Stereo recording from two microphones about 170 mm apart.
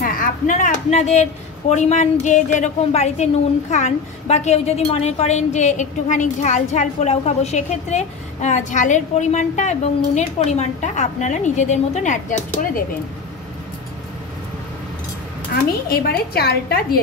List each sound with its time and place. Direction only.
0.0 s a woman's voice: 55° left (ahead or behind)
15.9 s a woman's voice: 65° left (ahead or behind)